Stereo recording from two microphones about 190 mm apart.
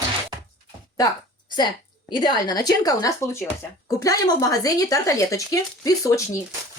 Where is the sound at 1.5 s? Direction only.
25° left (ahead or behind).